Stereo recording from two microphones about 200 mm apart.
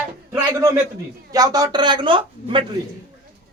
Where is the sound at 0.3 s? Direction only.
15° right (ahead or behind).